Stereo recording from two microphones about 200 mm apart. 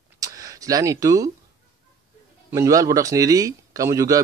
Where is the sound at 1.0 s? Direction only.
15° right (ahead or behind).